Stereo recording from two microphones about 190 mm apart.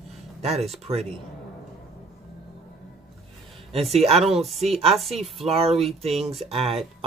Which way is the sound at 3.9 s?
35° right (ahead or behind).